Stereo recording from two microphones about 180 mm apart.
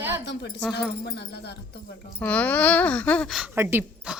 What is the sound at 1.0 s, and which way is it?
Speech, 65° left (ahead or behind).